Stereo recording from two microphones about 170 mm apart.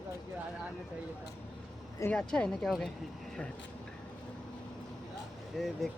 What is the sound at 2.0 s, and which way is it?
Speech, 10° left (ahead or behind).